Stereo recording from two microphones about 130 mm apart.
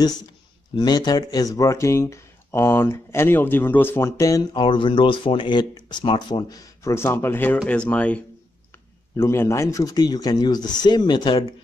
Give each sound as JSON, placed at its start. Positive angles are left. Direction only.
{"t": 0.7, "sound": "speech", "side_deg": 30}
{"t": 4.6, "sound": "speech", "side_deg": 40}
{"t": 6.8, "sound": "speech", "side_deg": 20}